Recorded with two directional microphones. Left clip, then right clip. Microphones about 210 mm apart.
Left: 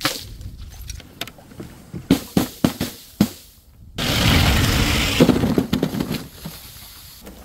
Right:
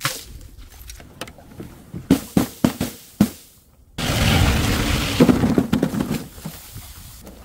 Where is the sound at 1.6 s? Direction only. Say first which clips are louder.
Left 1 dB; 45° left (ahead or behind).